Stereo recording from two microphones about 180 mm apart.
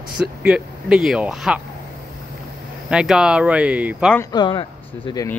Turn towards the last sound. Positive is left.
turn(degrees=30)  # may be behind; listen again after turning